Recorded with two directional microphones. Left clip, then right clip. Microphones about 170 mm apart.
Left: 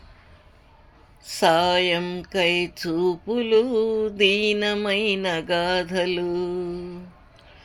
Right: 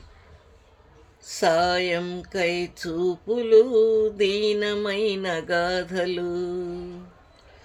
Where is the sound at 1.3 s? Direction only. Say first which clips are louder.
Left 2 dB; 20° left (ahead or behind).